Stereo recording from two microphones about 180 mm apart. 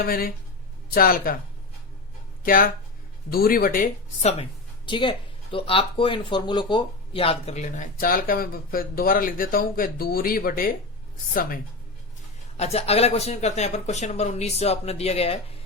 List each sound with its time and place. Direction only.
0.0 s speech: 55° left (ahead or behind)
2.4 s speech: 50° left (ahead or behind)
4.2 s speech: 35° left (ahead or behind)
4.9 s speech: 25° left (ahead or behind); by 11.6 s 50° left (ahead or behind)
12.5 s speech: 35° left (ahead or behind)